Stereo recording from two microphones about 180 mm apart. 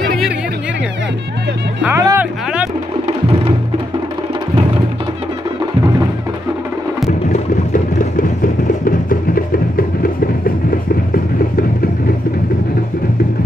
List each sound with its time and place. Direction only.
1.8 s music: 15° right (ahead or behind)
7.1 s a sound: 40° left (ahead or behind)
8.8 s music: 50° left (ahead or behind)